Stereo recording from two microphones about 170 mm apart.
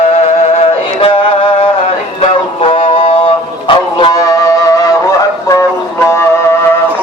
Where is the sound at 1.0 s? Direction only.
35° left (ahead or behind).